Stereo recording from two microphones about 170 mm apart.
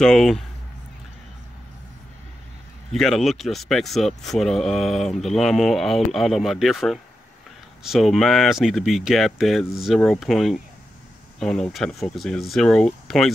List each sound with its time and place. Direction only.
0.0 s speech: 5° left (ahead or behind)
2.9 s speech: centre (ahead or behind)